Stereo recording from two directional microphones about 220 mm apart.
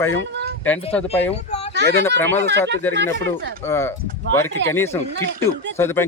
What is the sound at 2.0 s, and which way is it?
Speech, 10° left (ahead or behind).